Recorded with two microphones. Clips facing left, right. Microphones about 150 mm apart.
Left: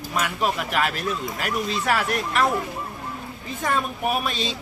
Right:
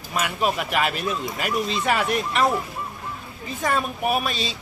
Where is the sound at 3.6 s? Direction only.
5° right (ahead or behind).